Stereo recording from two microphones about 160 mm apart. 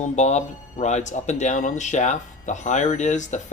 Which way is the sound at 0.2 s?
45° left (ahead or behind).